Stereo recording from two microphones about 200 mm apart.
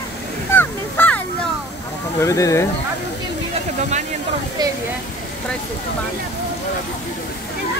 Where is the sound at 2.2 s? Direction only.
15° left (ahead or behind).